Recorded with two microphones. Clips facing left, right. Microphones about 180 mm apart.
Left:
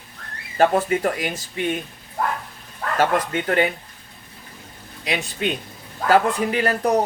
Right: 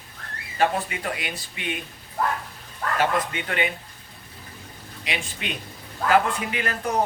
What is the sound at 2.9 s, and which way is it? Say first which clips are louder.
Speech: left 4 dB; 40° left (ahead or behind).